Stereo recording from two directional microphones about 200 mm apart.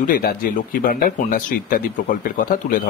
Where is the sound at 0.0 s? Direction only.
45° left (ahead or behind).